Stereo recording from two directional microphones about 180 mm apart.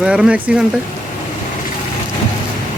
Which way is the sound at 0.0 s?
5° right (ahead or behind).